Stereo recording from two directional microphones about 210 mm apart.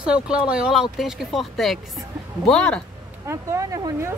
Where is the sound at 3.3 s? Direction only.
15° right (ahead or behind).